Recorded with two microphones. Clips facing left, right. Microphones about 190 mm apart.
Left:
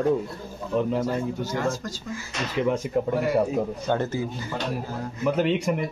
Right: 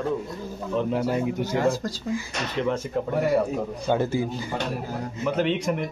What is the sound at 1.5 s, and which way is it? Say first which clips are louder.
Speech: right 5 dB; 30° right (ahead or behind).